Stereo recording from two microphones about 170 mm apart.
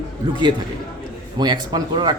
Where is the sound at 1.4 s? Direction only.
25° right (ahead or behind).